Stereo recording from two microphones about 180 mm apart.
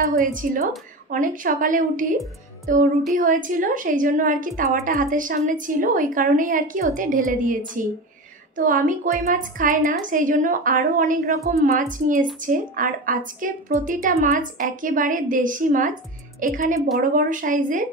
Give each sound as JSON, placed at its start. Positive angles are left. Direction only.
{"t": 0.2, "sound": "a woman's voice", "side_deg": -50}
{"t": 2.6, "sound": "music", "side_deg": -50}
{"t": 3.2, "sound": "a woman's voice", "side_deg": -50}